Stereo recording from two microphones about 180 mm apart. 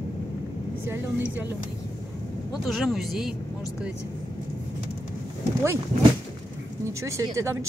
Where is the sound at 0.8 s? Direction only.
15° right (ahead or behind).